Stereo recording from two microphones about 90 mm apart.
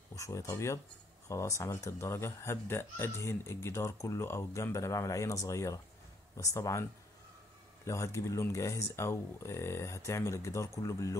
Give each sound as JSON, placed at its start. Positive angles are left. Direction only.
{"t": 0.1, "sound": "speech", "side_deg": 35}